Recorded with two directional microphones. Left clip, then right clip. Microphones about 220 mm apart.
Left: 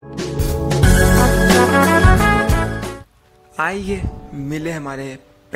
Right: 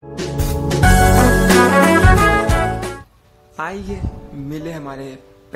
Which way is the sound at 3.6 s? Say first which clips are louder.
Left 5 dB; 15° left (ahead or behind).